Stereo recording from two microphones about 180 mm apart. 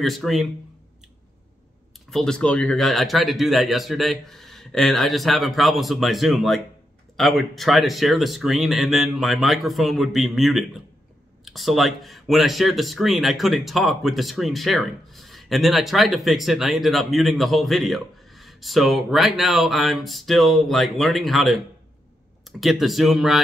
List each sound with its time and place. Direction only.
0.0 s speech: centre (ahead or behind)
2.0 s speech: 5° left (ahead or behind)
22.6 s speech: centre (ahead or behind)